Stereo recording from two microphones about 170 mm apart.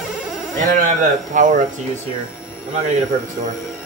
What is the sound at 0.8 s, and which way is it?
Speech, 50° right (ahead or behind).